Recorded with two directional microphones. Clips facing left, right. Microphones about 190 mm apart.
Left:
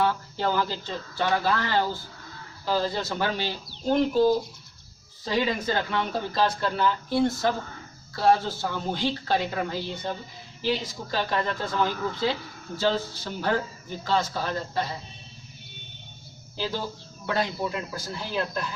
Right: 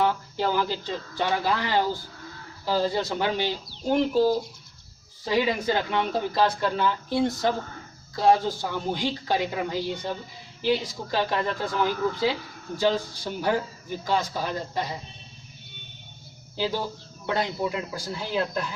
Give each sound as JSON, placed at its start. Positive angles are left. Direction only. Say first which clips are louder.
{"t": 0.0, "sound": "speech", "louder": "right 1 dB", "side_deg": -15}
{"t": 16.6, "sound": "speech", "louder": "right 3 dB", "side_deg": -15}